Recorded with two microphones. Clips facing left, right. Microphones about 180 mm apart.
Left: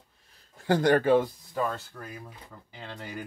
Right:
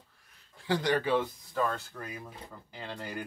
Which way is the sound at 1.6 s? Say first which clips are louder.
Left 1 dB; centre (ahead or behind).